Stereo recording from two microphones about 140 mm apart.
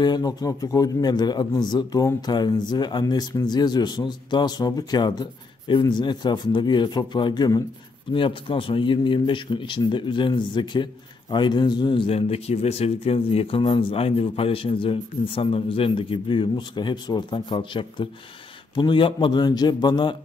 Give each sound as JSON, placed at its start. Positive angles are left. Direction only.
{"t": 0.0, "sound": "speech", "side_deg": 30}